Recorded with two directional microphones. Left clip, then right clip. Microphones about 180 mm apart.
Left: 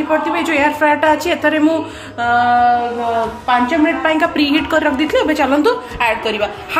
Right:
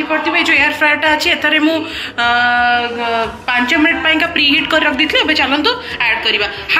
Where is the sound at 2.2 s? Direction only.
20° left (ahead or behind).